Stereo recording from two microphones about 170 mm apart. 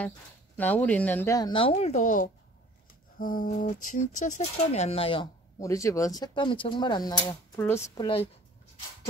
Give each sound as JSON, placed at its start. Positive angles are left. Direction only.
{"t": 0.6, "sound": "speech", "side_deg": 10}
{"t": 5.6, "sound": "speech", "side_deg": 20}